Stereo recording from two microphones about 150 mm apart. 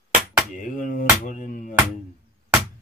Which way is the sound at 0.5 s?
60° left (ahead or behind).